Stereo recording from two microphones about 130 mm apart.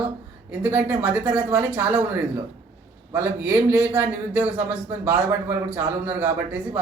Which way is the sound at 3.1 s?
20° right (ahead or behind).